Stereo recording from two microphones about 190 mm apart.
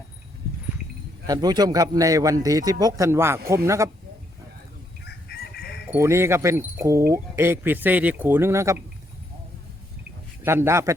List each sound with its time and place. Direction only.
1.3 s speech: 20° right (ahead or behind)
5.0 s chicken: 60° left (ahead or behind)
5.9 s speech: 15° right (ahead or behind)
10.4 s speech: 15° right (ahead or behind)